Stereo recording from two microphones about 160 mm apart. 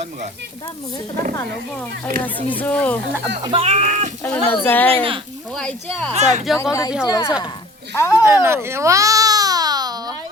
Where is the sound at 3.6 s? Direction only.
45° right (ahead or behind).